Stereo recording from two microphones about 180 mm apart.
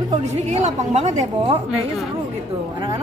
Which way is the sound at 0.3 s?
40° right (ahead or behind).